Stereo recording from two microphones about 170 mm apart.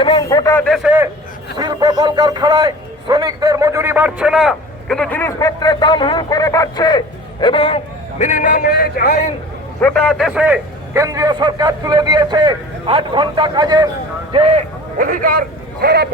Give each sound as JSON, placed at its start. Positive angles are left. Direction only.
{"t": 0.0, "sound": "a sound", "side_deg": 25}
{"t": 0.6, "sound": "a man's voice", "side_deg": 5}
{"t": 0.9, "sound": "a man's voice", "side_deg": -10}
{"t": 1.5, "sound": "a man's voice", "side_deg": -25}
{"t": 8.2, "sound": "a man's voice", "side_deg": 50}
{"t": 9.8, "sound": "a man's voice", "side_deg": 5}
{"t": 14.3, "sound": "speech", "side_deg": -35}
{"t": 14.9, "sound": "a man's voice", "side_deg": -55}